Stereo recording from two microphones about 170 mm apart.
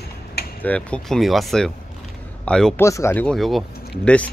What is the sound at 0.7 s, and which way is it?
A man's voice, 5° left (ahead or behind).